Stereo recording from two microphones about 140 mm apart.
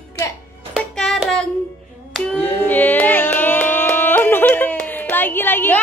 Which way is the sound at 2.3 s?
10° left (ahead or behind).